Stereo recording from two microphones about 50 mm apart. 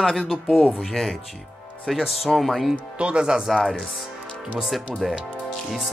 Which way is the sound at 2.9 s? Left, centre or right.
Right.